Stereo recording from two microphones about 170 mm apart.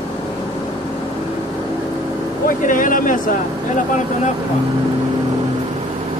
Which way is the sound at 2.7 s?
50° left (ahead or behind).